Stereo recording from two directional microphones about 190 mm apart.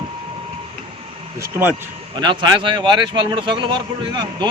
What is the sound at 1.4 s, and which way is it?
Speech, 10° right (ahead or behind).